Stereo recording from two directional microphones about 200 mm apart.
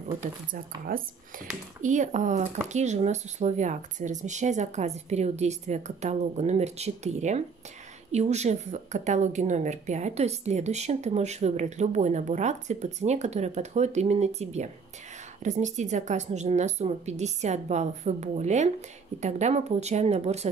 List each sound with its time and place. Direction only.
0.2 s speech: 45° right (ahead or behind)